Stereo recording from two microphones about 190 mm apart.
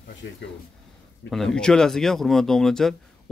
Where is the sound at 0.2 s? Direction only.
70° left (ahead or behind).